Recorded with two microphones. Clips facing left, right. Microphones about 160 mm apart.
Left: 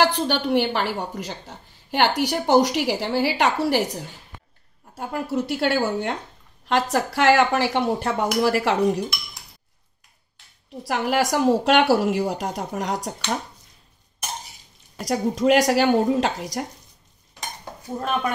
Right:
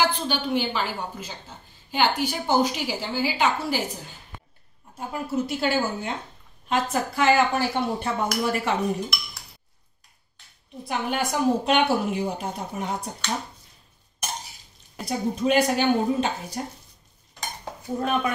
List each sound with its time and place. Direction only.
0.0 s speech: 70° left (ahead or behind)
10.8 s speech: 90° left
15.0 s speech: 90° left